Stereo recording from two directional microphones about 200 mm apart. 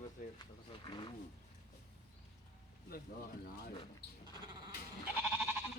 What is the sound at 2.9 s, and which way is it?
Speech, 50° left (ahead or behind).